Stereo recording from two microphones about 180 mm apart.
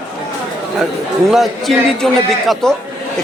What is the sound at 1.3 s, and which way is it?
Speech, centre (ahead or behind).